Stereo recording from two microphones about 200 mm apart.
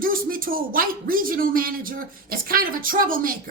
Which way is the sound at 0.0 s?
45° right (ahead or behind).